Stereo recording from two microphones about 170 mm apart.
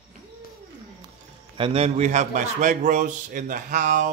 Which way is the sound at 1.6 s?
35° right (ahead or behind).